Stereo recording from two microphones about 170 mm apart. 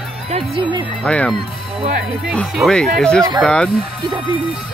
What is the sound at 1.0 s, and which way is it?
Speech, 5° left (ahead or behind).